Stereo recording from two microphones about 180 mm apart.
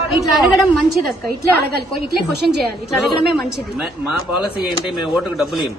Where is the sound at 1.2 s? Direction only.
60° right (ahead or behind).